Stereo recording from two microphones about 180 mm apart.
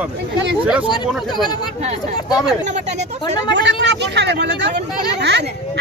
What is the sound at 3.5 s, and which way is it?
Speech, 75° right (ahead or behind).